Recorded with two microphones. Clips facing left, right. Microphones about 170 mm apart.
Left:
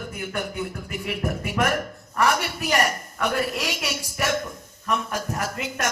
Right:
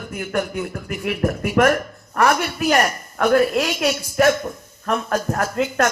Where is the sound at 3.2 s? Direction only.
75° right (ahead or behind); by 5.6 s 90° right.